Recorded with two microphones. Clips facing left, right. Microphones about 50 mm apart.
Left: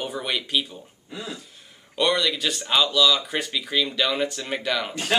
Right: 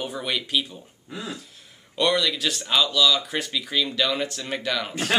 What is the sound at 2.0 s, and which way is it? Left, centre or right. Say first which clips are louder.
Speech: even; centre.